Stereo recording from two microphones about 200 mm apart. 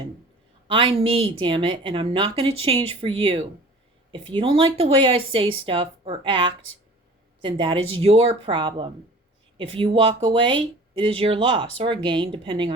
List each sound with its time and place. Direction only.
0.7 s speech: 25° right (ahead or behind)